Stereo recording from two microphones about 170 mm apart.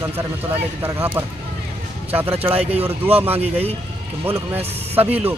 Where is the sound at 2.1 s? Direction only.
10° right (ahead or behind).